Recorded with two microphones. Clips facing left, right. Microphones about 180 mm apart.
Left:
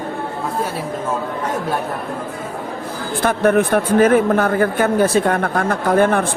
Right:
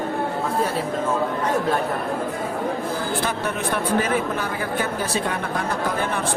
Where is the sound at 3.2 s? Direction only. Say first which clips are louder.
Left 10 dB; 55° left (ahead or behind).